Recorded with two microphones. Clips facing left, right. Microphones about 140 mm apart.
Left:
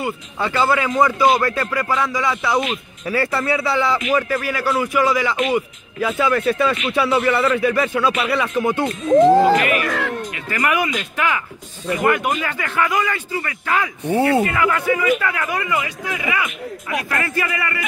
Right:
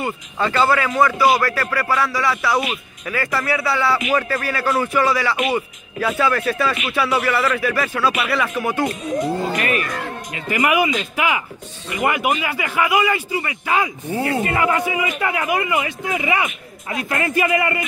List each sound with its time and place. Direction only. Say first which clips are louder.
0.0 s speech: right 1 dB; 10° left (ahead or behind)
5.3 s a man's voice: left 1 dB; 10° right (ahead or behind)
5.9 s speech: left 1 dB; 20° left (ahead or behind)
9.1 s speech: left 15 dB; 90° left
10.5 s a man's voice: right 3 dB; 10° right (ahead or behind)
14.1 s speech: left 6 dB; 30° left (ahead or behind)
14.4 s a man's voice: even; 25° right (ahead or behind)
15.8 s a man's voice: right 2 dB; 25° right (ahead or behind)